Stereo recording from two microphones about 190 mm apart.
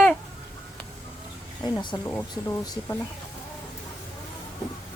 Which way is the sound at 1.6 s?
25° left (ahead or behind).